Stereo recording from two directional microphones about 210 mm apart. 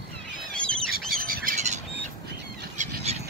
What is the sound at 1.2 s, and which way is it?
Squawk, 40° right (ahead or behind).